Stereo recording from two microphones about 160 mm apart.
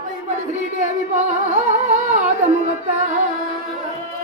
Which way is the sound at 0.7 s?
50° right (ahead or behind).